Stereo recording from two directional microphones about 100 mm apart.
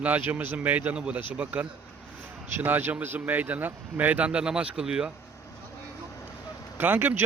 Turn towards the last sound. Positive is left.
turn(degrees=-20)  # may be behind; listen again after turning